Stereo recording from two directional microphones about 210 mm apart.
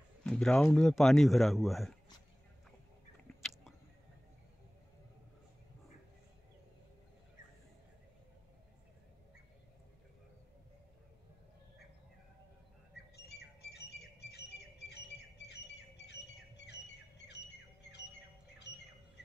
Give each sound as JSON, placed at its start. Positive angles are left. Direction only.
{"t": 0.2, "sound": "speech", "side_deg": 5}
{"t": 3.3, "sound": "a sound", "side_deg": 0}
{"t": 12.9, "sound": "squawk", "side_deg": 50}